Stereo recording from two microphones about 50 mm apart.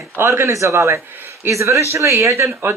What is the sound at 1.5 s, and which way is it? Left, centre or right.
Speech, right.